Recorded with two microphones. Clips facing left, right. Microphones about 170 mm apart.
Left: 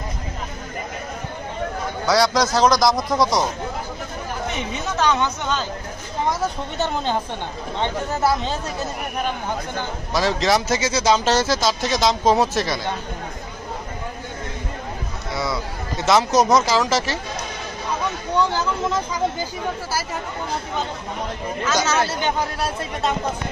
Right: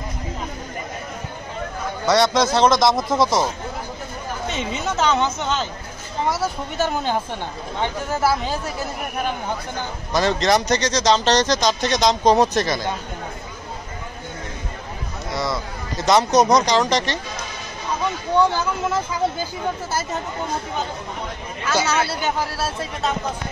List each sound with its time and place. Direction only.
2.0 s speech: centre (ahead or behind)
4.5 s speech: 20° right (ahead or behind)
7.8 s speech: 20° left (ahead or behind)
10.1 s speech: centre (ahead or behind)
15.3 s speech: centre (ahead or behind)
21.6 s speech: 10° right (ahead or behind)